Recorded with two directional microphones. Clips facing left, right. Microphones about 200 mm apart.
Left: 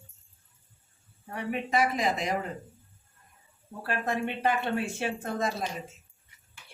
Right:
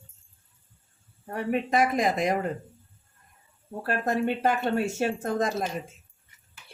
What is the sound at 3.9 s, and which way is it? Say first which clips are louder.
Speech: right 4 dB; 45° right (ahead or behind).